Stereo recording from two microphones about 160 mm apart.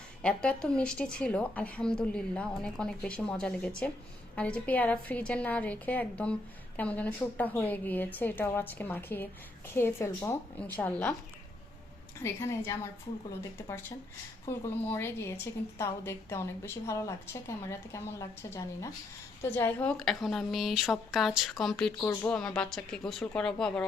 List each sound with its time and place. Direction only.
0.2 s a woman's voice: 5° left (ahead or behind)
12.2 s a woman's voice: 15° left (ahead or behind)
14.4 s a woman's voice: 15° left (ahead or behind)